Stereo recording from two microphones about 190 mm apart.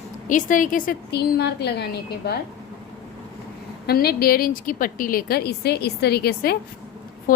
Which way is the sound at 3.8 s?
55° left (ahead or behind).